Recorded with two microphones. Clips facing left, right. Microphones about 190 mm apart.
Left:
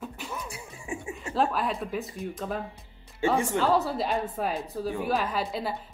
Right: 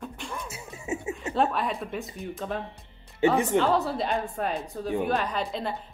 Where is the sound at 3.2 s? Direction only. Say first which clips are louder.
Right 3 dB; 20° right (ahead or behind).